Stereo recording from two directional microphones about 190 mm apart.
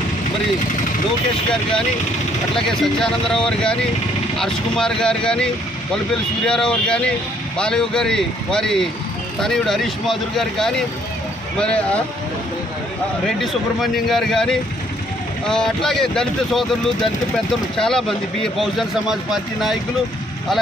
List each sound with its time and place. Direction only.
2.5 s speech: 5° left (ahead or behind)
13.4 s speech: centre (ahead or behind)